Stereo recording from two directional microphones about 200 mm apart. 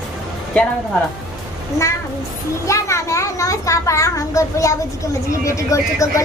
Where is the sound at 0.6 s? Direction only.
5° left (ahead or behind).